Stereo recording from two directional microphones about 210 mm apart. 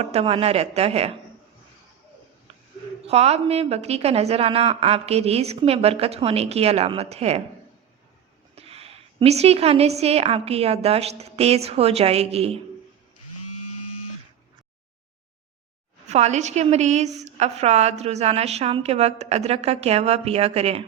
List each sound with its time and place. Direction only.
0.0 s a woman's voice: 30° right (ahead or behind)
3.0 s a woman's voice: 30° right (ahead or behind)
8.5 s a woman's voice: 30° right (ahead or behind)
13.3 s a sound: 90° left
16.0 s a woman's voice: 30° right (ahead or behind)